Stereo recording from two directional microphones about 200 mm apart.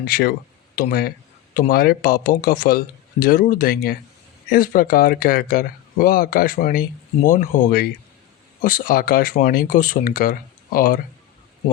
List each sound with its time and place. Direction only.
0.0 s speech: 50° left (ahead or behind)